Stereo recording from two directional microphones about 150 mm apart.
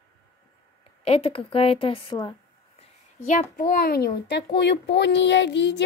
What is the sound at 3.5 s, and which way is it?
Speech, 70° left (ahead or behind).